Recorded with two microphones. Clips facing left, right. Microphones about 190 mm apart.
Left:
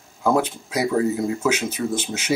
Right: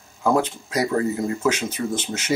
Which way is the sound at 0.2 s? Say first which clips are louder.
Even; 5° left (ahead or behind).